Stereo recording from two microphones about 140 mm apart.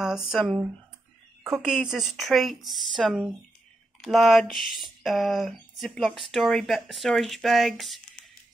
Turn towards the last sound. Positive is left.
turn(degrees=0)  # may be behind; listen again after turning